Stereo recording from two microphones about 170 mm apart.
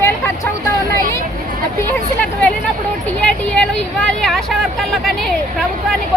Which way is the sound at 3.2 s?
5° left (ahead or behind).